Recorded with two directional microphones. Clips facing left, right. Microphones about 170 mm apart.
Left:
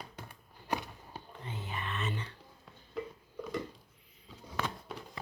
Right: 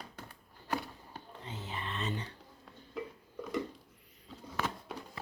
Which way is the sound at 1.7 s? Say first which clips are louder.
Even; 25° right (ahead or behind).